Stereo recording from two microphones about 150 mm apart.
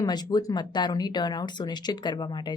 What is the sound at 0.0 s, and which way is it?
Speech, 25° left (ahead or behind).